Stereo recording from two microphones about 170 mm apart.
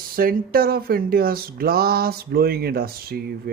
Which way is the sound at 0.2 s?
60° right (ahead or behind).